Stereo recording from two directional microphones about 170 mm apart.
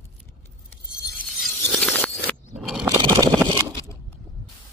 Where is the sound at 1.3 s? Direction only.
Centre (ahead or behind).